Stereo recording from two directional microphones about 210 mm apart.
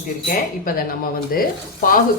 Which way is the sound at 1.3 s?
40° left (ahead or behind).